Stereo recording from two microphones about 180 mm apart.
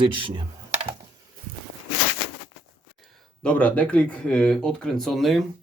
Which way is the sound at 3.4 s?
5° left (ahead or behind).